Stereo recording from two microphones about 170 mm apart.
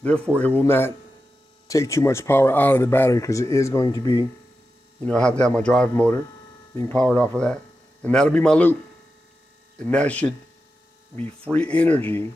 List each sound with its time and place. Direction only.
0.0 s speech: 10° left (ahead or behind)
5.0 s speech: 5° left (ahead or behind)
9.8 s speech: 5° left (ahead or behind)